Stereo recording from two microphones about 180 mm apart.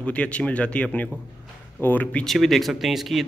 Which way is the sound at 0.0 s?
5° left (ahead or behind).